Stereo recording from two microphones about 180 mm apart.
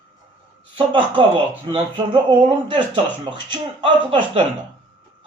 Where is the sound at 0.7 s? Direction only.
25° right (ahead or behind).